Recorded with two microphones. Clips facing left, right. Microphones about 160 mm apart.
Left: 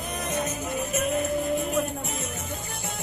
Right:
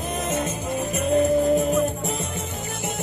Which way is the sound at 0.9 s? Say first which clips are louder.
Right 8 dB; 35° right (ahead or behind).